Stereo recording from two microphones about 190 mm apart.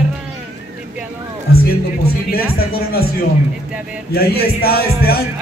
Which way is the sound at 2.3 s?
50° left (ahead or behind).